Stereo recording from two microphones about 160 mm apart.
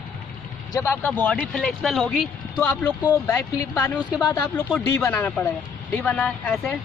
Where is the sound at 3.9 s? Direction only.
10° right (ahead or behind).